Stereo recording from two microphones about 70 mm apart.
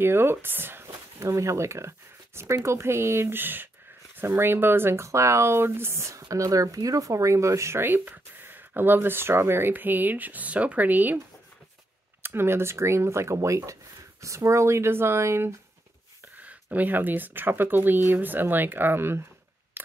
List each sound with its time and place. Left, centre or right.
0.0 s speech: right
1.2 s speech: right
12.2 s speech: right
16.7 s speech: right